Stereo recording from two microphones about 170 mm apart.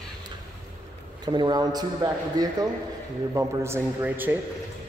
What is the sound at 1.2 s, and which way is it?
A man's voice, 25° right (ahead or behind).